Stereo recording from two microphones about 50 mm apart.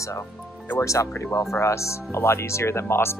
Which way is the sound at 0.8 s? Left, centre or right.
Left.